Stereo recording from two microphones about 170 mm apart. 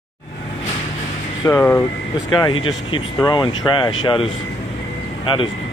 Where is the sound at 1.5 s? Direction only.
5° left (ahead or behind).